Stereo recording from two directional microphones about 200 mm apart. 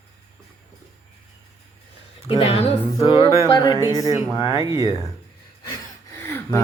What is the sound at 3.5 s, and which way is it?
Speech, 20° left (ahead or behind).